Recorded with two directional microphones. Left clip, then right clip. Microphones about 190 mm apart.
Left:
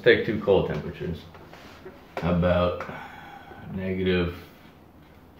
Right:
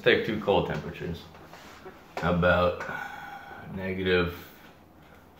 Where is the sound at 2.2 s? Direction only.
5° left (ahead or behind).